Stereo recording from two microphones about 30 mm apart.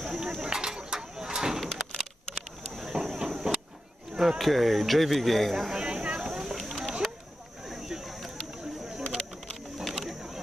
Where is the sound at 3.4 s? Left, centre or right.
Right.